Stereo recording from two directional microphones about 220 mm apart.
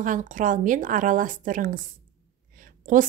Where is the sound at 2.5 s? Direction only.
40° right (ahead or behind).